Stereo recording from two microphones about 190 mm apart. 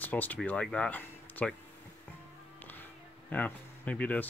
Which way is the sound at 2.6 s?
10° left (ahead or behind).